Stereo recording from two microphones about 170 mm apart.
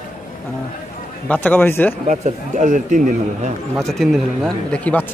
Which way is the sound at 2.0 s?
45° right (ahead or behind).